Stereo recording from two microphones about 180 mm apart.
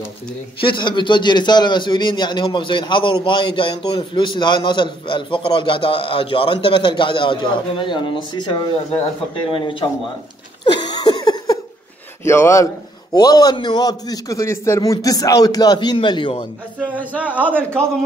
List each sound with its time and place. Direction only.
0.6 s a man's voice: 25° left (ahead or behind)
10.6 s a sound: 25° left (ahead or behind)
12.3 s a man's voice: 15° left (ahead or behind)
16.8 s a man's voice: 10° right (ahead or behind)
17.4 s a man's voice: 5° left (ahead or behind)